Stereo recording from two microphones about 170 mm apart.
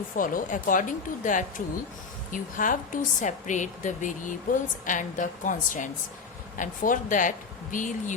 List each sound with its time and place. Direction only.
0.2 s a woman's voice: 55° left (ahead or behind)